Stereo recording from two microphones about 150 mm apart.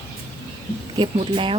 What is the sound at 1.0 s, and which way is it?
Speech, 35° right (ahead or behind).